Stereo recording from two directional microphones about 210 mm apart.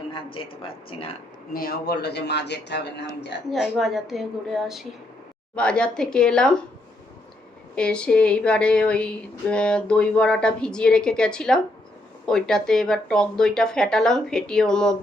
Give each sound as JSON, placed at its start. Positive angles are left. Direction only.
{"t": 0.6, "sound": "speech", "side_deg": 25}
{"t": 1.5, "sound": "speech", "side_deg": 45}
{"t": 3.5, "sound": "speech", "side_deg": 0}
{"t": 7.8, "sound": "speech", "side_deg": 5}